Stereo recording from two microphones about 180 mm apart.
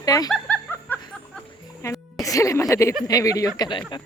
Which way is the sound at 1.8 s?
20° left (ahead or behind).